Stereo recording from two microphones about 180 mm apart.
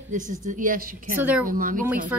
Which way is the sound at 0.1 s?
45° right (ahead or behind).